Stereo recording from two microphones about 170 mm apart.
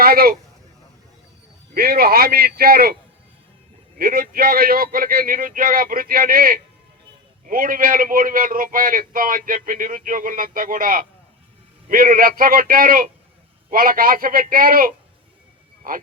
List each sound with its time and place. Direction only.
0.0 s speech: 60° right (ahead or behind)
1.7 s a man's voice: 60° right (ahead or behind)